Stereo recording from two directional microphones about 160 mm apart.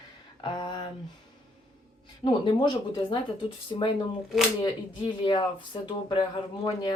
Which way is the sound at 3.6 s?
30° left (ahead or behind).